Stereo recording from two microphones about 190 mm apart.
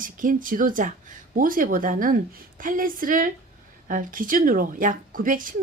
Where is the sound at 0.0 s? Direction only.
45° right (ahead or behind).